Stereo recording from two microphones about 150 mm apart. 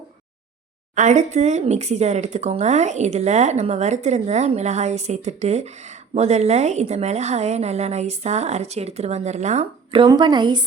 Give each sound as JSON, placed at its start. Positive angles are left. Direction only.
{"t": 0.9, "sound": "speech", "side_deg": -55}
{"t": 9.9, "sound": "speech", "side_deg": -30}